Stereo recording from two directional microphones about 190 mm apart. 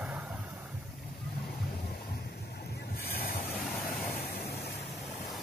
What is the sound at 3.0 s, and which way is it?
Vehicle, 50° left (ahead or behind).